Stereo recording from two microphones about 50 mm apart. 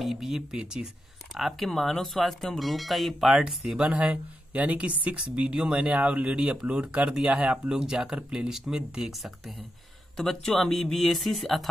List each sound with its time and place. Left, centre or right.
0.0 s a sound: centre
0.5 s speech: centre
1.3 s speech: centre
3.7 s speech: right
7.6 s speech: centre
10.1 s speech: centre